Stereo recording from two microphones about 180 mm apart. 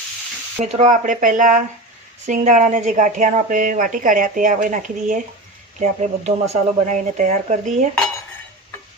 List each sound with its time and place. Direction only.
0.6 s a woman's voice: 40° right (ahead or behind)